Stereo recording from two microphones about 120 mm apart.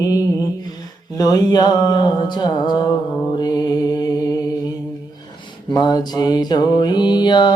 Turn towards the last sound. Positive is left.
turn(degrees=40)  # may be behind; listen again after turning